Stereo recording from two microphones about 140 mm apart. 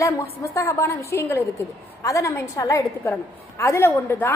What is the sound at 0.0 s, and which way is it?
A woman's voice, 20° left (ahead or behind).